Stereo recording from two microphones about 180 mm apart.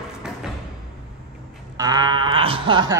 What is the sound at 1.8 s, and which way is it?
Speech, 20° right (ahead or behind).